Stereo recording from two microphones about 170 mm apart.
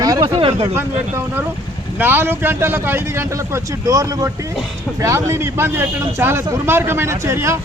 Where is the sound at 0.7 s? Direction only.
15° right (ahead or behind).